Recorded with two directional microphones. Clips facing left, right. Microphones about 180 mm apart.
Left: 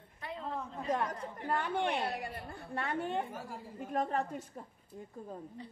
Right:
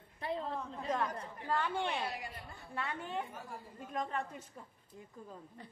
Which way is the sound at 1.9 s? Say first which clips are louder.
Left 4 dB; 55° left (ahead or behind).